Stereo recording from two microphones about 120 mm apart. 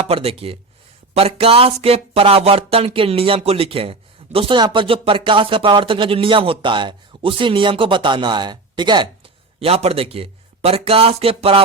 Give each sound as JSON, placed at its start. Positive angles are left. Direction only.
{"t": 0.1, "sound": "speech", "side_deg": -55}
{"t": 9.6, "sound": "speech", "side_deg": -55}